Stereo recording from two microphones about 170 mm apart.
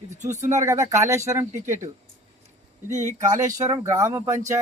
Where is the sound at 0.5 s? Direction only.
20° right (ahead or behind).